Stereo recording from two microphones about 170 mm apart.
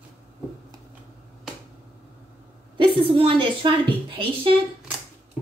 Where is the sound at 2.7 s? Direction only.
30° right (ahead or behind).